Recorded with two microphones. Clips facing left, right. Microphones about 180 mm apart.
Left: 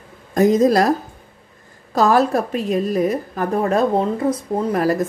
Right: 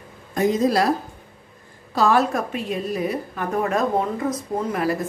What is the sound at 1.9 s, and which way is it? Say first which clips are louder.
A woman's voice: left 3 dB; 40° left (ahead or behind).